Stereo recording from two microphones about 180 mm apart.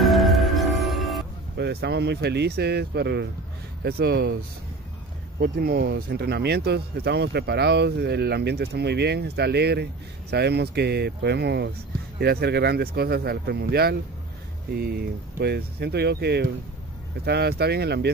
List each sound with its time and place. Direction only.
0.0 s music: centre (ahead or behind)
1.6 s speech: 65° right (ahead or behind)
5.4 s speech: 60° right (ahead or behind)